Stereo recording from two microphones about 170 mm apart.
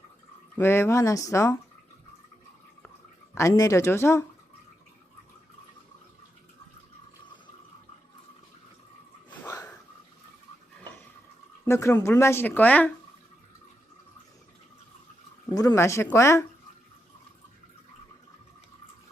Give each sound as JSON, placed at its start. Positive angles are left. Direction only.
{"t": 0.5, "sound": "speech", "side_deg": 15}
{"t": 3.3, "sound": "speech", "side_deg": 20}
{"t": 9.3, "sound": "a sound", "side_deg": 15}
{"t": 11.6, "sound": "speech", "side_deg": 15}
{"t": 15.4, "sound": "speech", "side_deg": 20}